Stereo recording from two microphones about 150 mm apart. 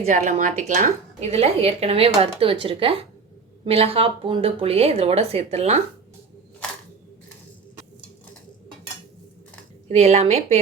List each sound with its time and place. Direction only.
0.1 s a woman's voice: 60° right (ahead or behind)
9.9 s a woman's voice: 45° right (ahead or behind)